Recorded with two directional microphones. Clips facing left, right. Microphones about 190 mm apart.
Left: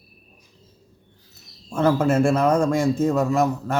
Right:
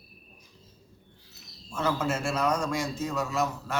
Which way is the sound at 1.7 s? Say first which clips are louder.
Left 10 dB; 55° left (ahead or behind).